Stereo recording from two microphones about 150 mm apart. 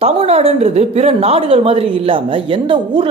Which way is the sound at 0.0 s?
40° right (ahead or behind).